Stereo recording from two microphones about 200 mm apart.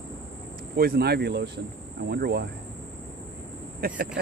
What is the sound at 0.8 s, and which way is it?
Speech, 50° right (ahead or behind).